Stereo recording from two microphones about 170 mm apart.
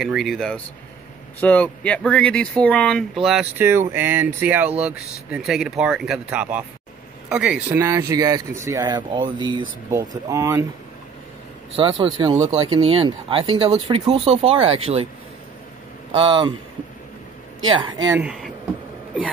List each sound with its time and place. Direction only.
0.0 s speech: centre (ahead or behind)
3.5 s speech: 15° right (ahead or behind)
7.8 s speech: 20° right (ahead or behind)
11.7 s speech: 30° right (ahead or behind)
16.1 s speech: 30° right (ahead or behind)
17.6 s speech: 25° right (ahead or behind)
18.1 s speech: 5° right (ahead or behind)